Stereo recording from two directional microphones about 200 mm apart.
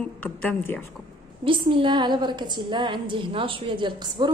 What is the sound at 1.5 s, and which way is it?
A woman's voice, 25° right (ahead or behind).